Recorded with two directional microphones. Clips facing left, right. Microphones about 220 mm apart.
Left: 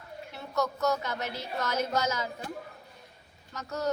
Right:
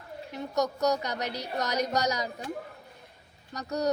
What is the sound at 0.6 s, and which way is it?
Speech, 15° right (ahead or behind).